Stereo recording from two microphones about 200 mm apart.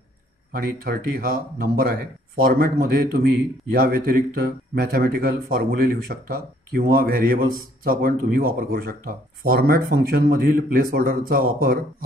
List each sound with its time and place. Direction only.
0.5 s speech: 50° right (ahead or behind)